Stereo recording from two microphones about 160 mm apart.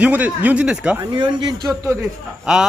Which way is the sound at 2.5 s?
5° right (ahead or behind).